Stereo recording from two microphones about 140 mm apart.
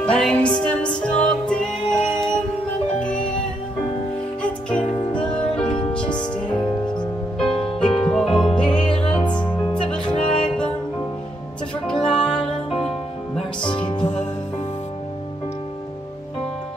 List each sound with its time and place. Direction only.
0.0 s music: 5° left (ahead or behind)
4.4 s music: 5° left (ahead or behind)
11.8 s music: 5° left (ahead or behind)
13.7 s music: 35° left (ahead or behind)